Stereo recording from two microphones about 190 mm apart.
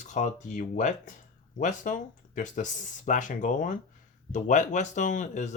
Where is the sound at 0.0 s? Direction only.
40° left (ahead or behind).